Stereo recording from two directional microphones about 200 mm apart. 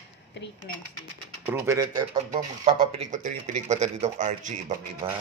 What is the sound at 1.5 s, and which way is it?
Speech, 15° right (ahead or behind).